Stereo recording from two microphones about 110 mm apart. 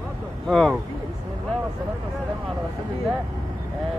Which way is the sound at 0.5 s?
5° left (ahead or behind).